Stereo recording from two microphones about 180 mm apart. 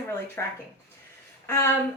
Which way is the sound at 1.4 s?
15° left (ahead or behind).